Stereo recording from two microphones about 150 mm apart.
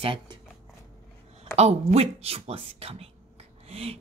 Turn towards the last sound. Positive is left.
turn(degrees=-40)  # may be behind; listen again after turning